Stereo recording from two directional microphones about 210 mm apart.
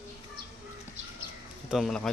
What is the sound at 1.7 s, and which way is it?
Speech, centre (ahead or behind).